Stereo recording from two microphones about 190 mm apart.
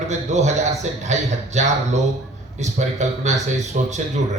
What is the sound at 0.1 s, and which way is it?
A man's voice, 35° right (ahead or behind).